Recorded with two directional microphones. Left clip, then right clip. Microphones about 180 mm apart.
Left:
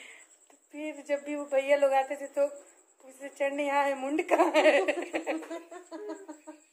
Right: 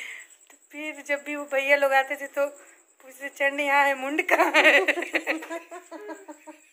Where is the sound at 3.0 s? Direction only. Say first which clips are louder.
Right 6 dB; 5° left (ahead or behind).